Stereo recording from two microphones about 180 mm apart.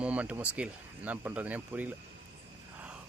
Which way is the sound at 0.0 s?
5° right (ahead or behind).